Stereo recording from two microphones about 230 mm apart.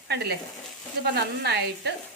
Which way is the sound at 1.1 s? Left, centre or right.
Right.